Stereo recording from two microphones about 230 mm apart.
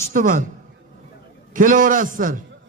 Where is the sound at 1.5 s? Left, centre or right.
Right.